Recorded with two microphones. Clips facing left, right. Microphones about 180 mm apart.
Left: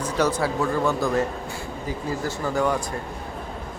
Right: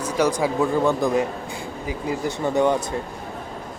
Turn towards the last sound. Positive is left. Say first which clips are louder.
# right 4 dB
turn(degrees=-20)  # may be behind; listen again after turning